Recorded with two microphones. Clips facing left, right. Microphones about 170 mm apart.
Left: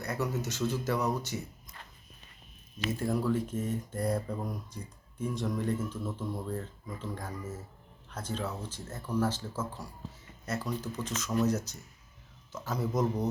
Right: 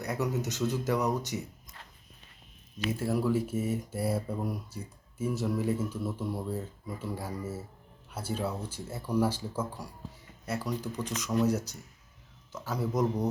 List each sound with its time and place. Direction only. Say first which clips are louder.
0.0 s speech: right 2 dB; 15° right (ahead or behind)
2.7 s speech: right 1 dB; 10° right (ahead or behind)